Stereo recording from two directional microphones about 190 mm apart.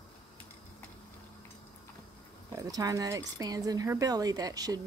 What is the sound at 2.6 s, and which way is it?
A woman's voice, 20° right (ahead or behind).